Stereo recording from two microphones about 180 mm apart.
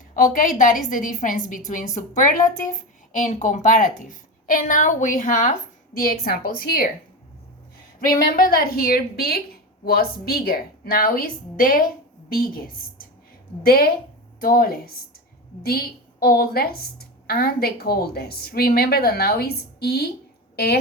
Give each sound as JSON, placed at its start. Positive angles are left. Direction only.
{"t": 0.1, "sound": "a woman's voice", "side_deg": 50}
{"t": 6.0, "sound": "a woman's voice", "side_deg": 55}
{"t": 8.2, "sound": "a woman's voice", "side_deg": 50}
{"t": 16.2, "sound": "a woman's voice", "side_deg": 55}